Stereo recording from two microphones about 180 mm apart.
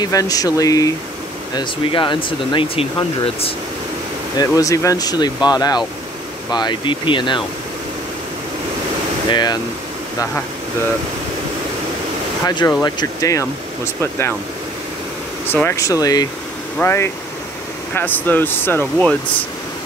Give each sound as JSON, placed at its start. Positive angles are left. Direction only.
{"t": 0.0, "sound": "speech", "side_deg": 20}
{"t": 4.4, "sound": "speech", "side_deg": 20}
{"t": 9.3, "sound": "speech", "side_deg": 25}
{"t": 12.4, "sound": "speech", "side_deg": 20}
{"t": 15.5, "sound": "speech", "side_deg": 15}